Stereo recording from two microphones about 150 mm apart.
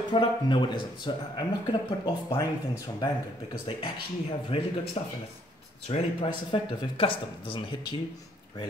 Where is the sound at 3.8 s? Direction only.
35° left (ahead or behind).